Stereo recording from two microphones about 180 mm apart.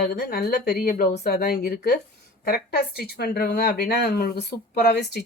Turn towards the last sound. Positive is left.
turn(degrees=65)  # may be behind; listen again after turning